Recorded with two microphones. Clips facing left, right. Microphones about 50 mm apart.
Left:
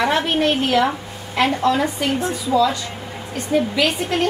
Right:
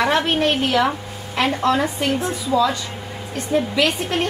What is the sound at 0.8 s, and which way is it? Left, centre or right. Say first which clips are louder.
A woman's voice: even; centre.